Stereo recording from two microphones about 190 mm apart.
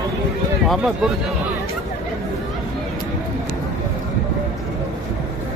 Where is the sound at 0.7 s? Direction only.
Centre (ahead or behind).